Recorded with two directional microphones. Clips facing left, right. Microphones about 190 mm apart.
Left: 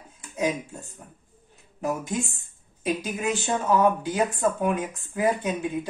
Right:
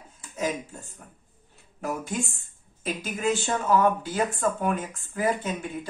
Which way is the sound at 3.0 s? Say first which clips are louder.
Right 1 dB; 15° left (ahead or behind).